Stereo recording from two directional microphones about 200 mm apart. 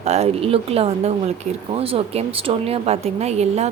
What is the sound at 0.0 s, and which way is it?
A woman's voice, 35° right (ahead or behind).